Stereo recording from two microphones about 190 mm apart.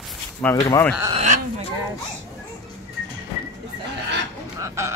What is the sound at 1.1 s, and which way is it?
Speech, 40° right (ahead or behind).